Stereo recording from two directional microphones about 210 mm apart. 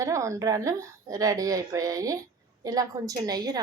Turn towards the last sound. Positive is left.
turn(degrees=-20)  # may be behind; listen again after turning